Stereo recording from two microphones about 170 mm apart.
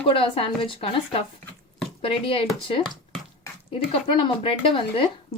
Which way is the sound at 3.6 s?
30° left (ahead or behind).